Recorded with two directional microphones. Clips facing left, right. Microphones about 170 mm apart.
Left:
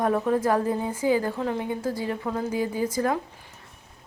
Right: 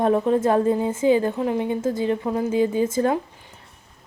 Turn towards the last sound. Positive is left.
turn(degrees=-25)  # may be behind; listen again after turning